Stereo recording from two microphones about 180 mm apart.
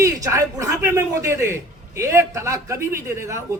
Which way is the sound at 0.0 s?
15° right (ahead or behind).